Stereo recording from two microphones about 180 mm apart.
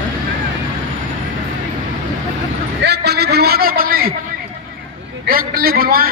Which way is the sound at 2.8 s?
70° right (ahead or behind).